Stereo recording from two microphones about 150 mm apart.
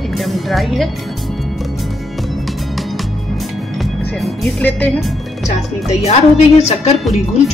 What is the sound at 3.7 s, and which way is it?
Music, centre (ahead or behind).